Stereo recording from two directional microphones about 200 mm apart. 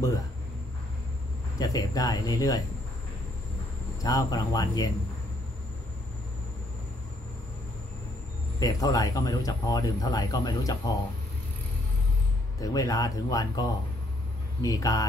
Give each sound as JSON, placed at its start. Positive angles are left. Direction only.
{"t": 1.6, "sound": "speech", "side_deg": 15}
{"t": 4.0, "sound": "speech", "side_deg": 15}
{"t": 8.5, "sound": "speech", "side_deg": 20}
{"t": 12.5, "sound": "speech", "side_deg": 15}